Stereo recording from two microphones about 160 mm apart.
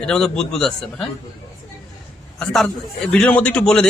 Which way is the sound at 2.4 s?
5° left (ahead or behind).